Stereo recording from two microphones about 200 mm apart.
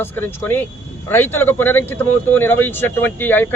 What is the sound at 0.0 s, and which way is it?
Speech, 10° left (ahead or behind).